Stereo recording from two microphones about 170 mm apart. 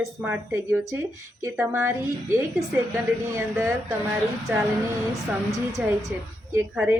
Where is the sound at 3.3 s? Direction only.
15° right (ahead or behind).